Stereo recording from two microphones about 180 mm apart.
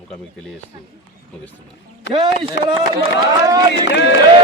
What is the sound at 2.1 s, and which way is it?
Speech, 30° right (ahead or behind).